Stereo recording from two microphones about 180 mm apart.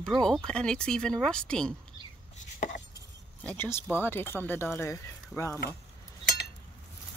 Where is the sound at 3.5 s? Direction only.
10° left (ahead or behind).